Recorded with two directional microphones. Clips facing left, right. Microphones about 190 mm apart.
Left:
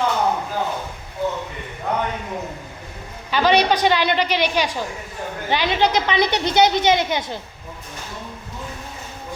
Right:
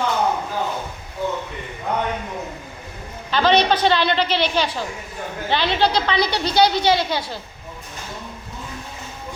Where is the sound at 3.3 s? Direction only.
10° left (ahead or behind).